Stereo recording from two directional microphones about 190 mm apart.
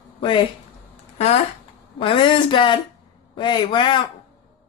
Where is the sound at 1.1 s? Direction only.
35° left (ahead or behind).